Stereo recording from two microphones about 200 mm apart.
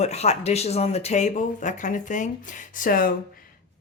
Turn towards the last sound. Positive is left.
turn(degrees=45)  # may be behind; listen again after turning